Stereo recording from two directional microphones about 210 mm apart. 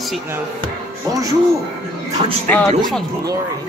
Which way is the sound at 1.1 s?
15° right (ahead or behind).